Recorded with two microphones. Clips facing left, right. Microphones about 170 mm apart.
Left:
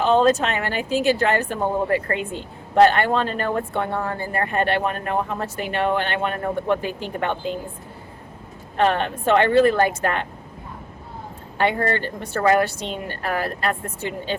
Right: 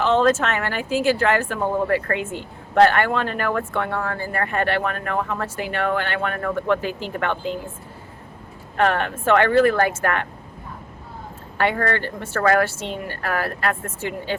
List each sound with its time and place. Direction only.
0.4 s speech: 20° left (ahead or behind)
8.8 s speech: 20° left (ahead or behind)
11.5 s speech: 20° left (ahead or behind)